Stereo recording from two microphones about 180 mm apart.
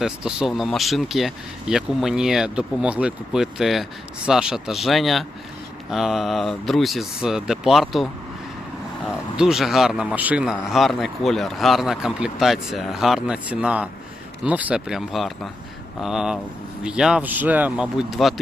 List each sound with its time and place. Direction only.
0.0 s speech: 5° right (ahead or behind)
9.3 s speech: 5° right (ahead or behind)